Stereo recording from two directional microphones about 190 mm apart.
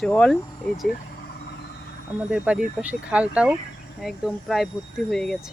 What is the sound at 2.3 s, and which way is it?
Speech, 5° right (ahead or behind).